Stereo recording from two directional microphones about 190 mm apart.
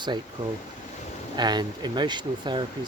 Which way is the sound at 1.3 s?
20° right (ahead or behind).